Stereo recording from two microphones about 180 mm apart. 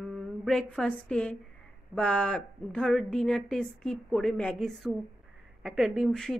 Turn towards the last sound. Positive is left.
turn(degrees=0)  # may be behind; listen again after turning